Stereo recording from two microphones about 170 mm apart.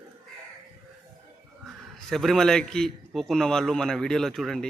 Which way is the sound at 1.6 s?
Centre (ahead or behind).